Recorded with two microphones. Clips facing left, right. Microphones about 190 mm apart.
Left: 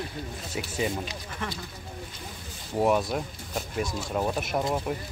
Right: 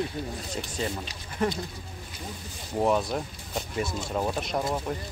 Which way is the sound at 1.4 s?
35° right (ahead or behind).